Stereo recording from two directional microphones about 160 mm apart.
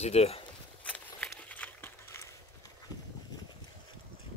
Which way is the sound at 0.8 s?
10° left (ahead or behind).